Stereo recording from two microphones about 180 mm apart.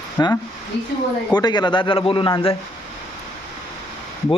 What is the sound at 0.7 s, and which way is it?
Speech, 70° left (ahead or behind).